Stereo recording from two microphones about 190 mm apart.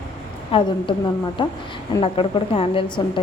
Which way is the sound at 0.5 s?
25° left (ahead or behind).